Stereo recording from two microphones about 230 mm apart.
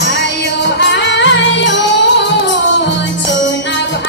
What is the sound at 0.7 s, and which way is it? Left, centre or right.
Music, left.